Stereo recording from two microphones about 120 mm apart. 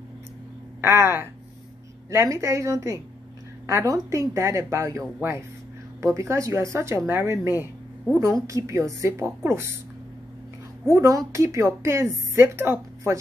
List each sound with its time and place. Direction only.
0.7 s a woman's voice: 20° right (ahead or behind)
11.0 s a woman's voice: 25° right (ahead or behind)